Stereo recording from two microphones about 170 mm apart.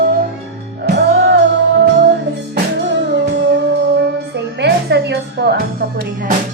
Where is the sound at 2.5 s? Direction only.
90° right.